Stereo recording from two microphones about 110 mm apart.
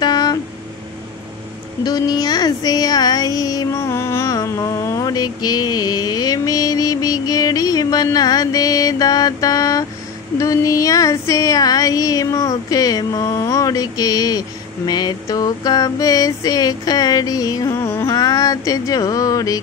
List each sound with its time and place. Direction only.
0.0 s a sound: 40° left (ahead or behind)
1.9 s child singing: 35° left (ahead or behind)
10.3 s mantra: 30° left (ahead or behind)